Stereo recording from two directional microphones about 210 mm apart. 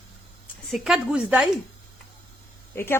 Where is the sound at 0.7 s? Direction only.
Centre (ahead or behind).